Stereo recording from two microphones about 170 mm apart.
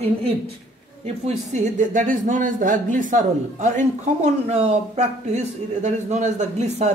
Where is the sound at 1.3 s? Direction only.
50° right (ahead or behind).